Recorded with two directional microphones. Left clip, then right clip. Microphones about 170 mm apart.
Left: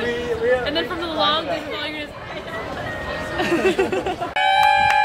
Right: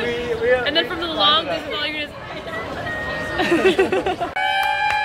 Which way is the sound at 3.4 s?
25° right (ahead or behind).